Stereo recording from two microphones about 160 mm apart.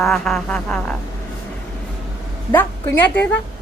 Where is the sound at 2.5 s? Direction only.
10° left (ahead or behind).